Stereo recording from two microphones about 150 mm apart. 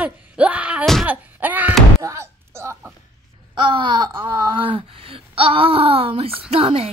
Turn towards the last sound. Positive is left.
turn(degrees=-40)  # may be behind; listen again after turning